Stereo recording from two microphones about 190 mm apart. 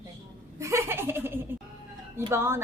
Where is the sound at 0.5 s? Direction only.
15° right (ahead or behind).